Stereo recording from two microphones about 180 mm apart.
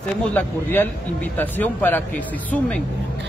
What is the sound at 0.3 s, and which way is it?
A man's voice, 10° left (ahead or behind).